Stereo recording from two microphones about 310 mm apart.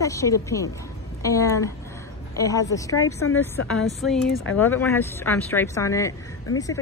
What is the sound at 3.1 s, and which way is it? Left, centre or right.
Speech, left.